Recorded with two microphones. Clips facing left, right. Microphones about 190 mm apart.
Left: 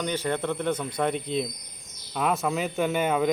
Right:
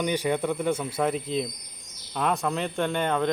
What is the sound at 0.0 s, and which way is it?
Speech, 15° right (ahead or behind).